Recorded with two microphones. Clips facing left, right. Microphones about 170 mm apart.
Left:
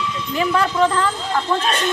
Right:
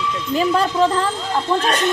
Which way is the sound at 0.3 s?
35° right (ahead or behind).